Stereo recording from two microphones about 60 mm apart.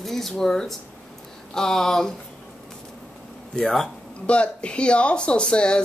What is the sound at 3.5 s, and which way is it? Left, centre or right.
Speech, centre.